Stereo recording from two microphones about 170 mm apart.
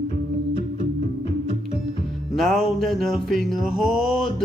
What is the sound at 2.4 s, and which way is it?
Mantra, centre (ahead or behind).